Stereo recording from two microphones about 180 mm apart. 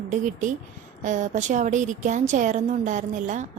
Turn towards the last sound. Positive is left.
turn(degrees=-45)  # may be behind; listen again after turning